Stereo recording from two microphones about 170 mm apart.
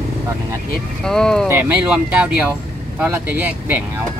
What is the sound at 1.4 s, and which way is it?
Speech, 10° right (ahead or behind).